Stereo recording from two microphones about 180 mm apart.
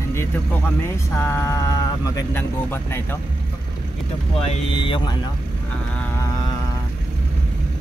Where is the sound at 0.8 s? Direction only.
15° left (ahead or behind).